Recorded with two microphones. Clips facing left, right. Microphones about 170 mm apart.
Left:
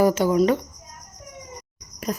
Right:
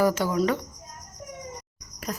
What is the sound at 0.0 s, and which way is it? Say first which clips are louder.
Speech: left 5 dB; 20° left (ahead or behind).